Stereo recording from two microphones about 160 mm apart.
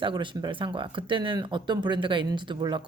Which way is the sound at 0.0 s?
30° right (ahead or behind).